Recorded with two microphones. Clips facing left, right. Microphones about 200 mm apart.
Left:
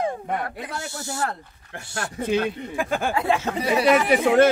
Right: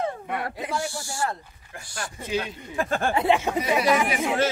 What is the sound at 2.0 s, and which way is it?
Speech, 60° left (ahead or behind).